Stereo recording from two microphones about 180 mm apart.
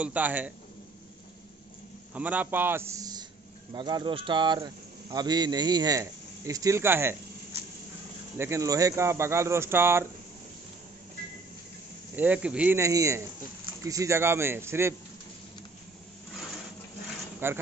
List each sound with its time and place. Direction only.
0.0 s speech: 10° right (ahead or behind)
2.1 s speech: 10° right (ahead or behind)
8.4 s speech: 15° right (ahead or behind)
12.2 s speech: 5° right (ahead or behind)
17.4 s speech: 10° right (ahead or behind)